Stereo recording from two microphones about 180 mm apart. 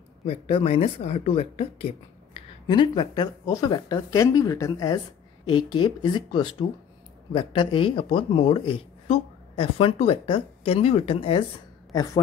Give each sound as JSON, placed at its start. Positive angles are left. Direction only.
{"t": 0.3, "sound": "speech", "side_deg": 30}
{"t": 11.9, "sound": "a woman's voice", "side_deg": 20}